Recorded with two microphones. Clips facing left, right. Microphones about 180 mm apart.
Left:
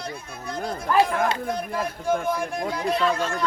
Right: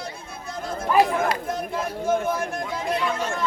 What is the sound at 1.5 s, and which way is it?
Speech, centre (ahead or behind).